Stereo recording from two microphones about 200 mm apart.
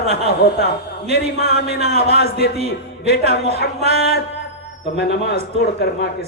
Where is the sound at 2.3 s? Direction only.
55° left (ahead or behind).